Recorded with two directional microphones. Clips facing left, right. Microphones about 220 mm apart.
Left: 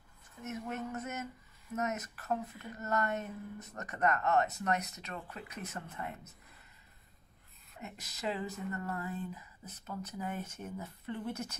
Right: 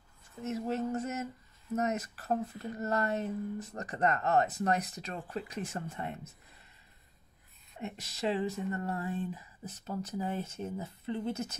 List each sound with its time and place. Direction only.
0.4 s speech: 30° right (ahead or behind)
7.8 s speech: 30° right (ahead or behind)